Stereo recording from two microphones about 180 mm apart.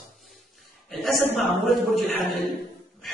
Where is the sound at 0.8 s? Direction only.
Centre (ahead or behind).